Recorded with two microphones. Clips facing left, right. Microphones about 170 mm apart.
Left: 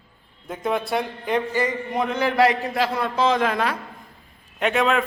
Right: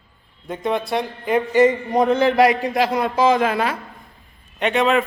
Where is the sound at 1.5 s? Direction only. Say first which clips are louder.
Right 9 dB; 20° right (ahead or behind).